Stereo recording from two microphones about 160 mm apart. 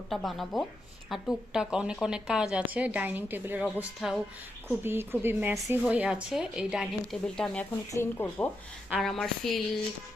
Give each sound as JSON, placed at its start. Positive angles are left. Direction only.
{"t": 0.1, "sound": "a woman's voice", "side_deg": 0}
{"t": 7.9, "sound": "speech", "side_deg": 15}
{"t": 8.9, "sound": "a woman's voice", "side_deg": 0}